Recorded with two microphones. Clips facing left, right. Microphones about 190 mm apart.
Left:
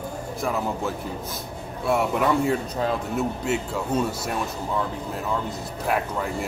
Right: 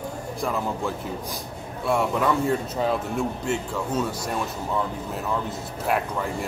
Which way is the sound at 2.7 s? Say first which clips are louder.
Right 1 dB; centre (ahead or behind).